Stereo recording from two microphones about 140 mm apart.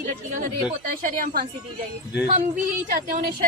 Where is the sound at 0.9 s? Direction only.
90° right.